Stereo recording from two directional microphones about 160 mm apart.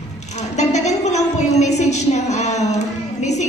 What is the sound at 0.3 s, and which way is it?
A woman's voice, 45° left (ahead or behind).